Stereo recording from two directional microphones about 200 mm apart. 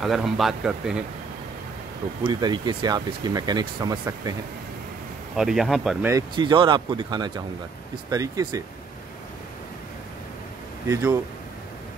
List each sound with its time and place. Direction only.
0.0 s speech: centre (ahead or behind)
2.2 s speech: 20° right (ahead or behind)
5.3 s speech: centre (ahead or behind)
6.0 s speech: 20° right (ahead or behind)
10.9 s speech: 15° right (ahead or behind)